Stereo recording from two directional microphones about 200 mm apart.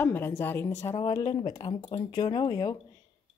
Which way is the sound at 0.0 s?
10° left (ahead or behind).